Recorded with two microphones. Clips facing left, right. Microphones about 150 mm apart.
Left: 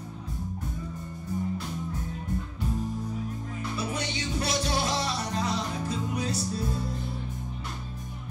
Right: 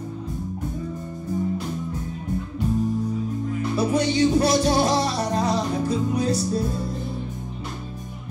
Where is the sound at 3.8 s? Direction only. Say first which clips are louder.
Right 15 dB; 35° right (ahead or behind).